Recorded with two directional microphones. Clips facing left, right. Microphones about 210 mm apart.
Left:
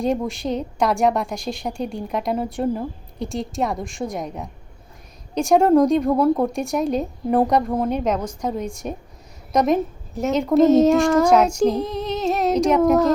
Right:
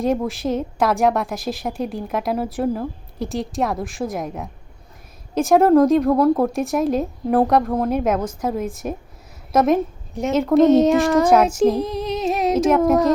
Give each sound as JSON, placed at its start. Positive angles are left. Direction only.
{"t": 0.0, "sound": "a woman's voice", "side_deg": 0}
{"t": 7.9, "sound": "a woman's voice", "side_deg": -5}
{"t": 11.8, "sound": "female singing", "side_deg": 20}
{"t": 12.0, "sound": "a woman's voice", "side_deg": 0}